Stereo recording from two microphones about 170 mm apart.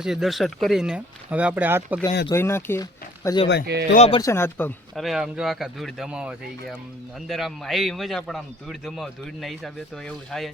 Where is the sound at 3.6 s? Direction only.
70° right (ahead or behind).